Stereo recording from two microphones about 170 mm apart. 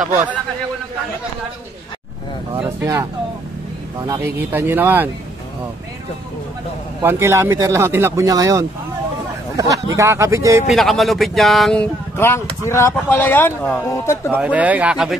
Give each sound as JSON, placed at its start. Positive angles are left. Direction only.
{"t": 2.6, "sound": "speech", "side_deg": -20}
{"t": 7.0, "sound": "speech", "side_deg": -15}
{"t": 10.7, "sound": "speech", "side_deg": 0}
{"t": 14.3, "sound": "speech", "side_deg": -10}